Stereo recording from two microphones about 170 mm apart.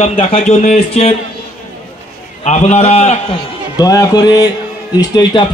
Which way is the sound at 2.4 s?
40° left (ahead or behind).